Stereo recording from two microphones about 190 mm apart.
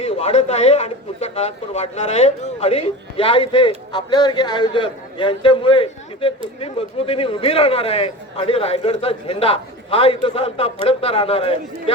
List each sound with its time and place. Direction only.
0.0 s a man's voice: 35° left (ahead or behind)